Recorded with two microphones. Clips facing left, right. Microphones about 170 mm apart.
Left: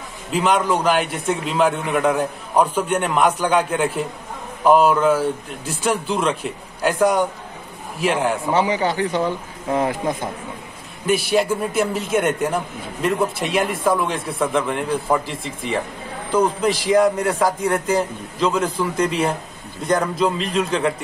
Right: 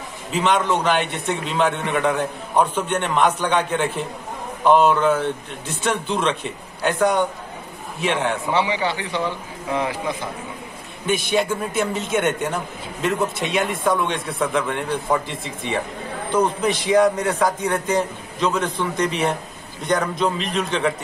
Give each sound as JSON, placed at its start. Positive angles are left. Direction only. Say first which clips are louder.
{"t": 0.3, "sound": "a man's voice", "louder": "left 1 dB", "side_deg": 5}
{"t": 8.5, "sound": "a man's voice", "louder": "left 3 dB", "side_deg": 40}
{"t": 11.3, "sound": "a man's voice", "louder": "left 2 dB", "side_deg": 5}